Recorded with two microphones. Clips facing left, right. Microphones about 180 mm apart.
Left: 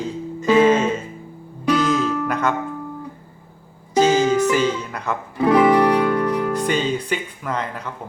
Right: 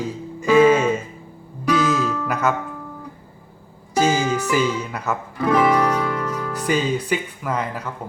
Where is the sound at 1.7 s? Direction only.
5° right (ahead or behind).